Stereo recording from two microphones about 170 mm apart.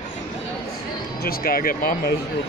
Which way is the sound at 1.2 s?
60° left (ahead or behind).